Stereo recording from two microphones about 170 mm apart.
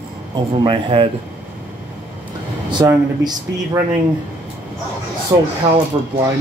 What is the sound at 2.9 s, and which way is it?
Speech, 20° right (ahead or behind).